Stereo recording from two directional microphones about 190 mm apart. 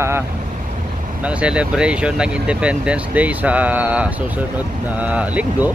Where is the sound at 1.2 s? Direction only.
5° right (ahead or behind).